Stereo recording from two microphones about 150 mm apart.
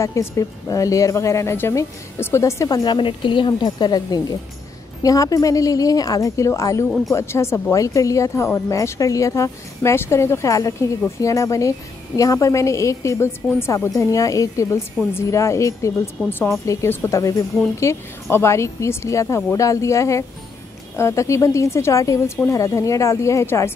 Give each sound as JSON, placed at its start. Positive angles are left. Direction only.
{"t": 0.0, "sound": "speech", "side_deg": 20}